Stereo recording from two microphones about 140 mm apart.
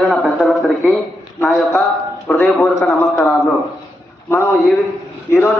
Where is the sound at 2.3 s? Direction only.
5° left (ahead or behind).